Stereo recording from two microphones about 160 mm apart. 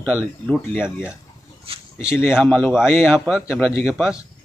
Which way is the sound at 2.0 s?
15° left (ahead or behind).